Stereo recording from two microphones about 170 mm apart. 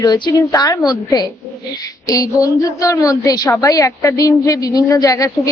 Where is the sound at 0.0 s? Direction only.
20° left (ahead or behind).